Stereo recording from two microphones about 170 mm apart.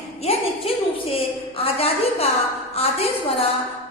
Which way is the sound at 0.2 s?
35° left (ahead or behind).